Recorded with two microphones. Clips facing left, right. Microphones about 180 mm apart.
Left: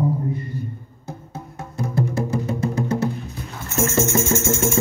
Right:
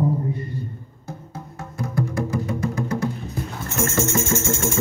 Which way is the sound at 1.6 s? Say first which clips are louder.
Left 2 dB; 25° left (ahead or behind).